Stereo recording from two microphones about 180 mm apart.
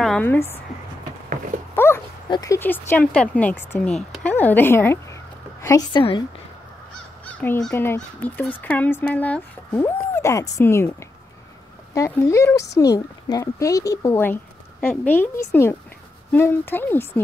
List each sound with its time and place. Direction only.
0.0 s speech: 5° left (ahead or behind)
1.8 s dog: 15° left (ahead or behind)
2.2 s a woman's voice: 20° left (ahead or behind)
7.7 s speech: 15° left (ahead or behind)
11.9 s speech: 15° left (ahead or behind)
16.3 s speech: 10° left (ahead or behind)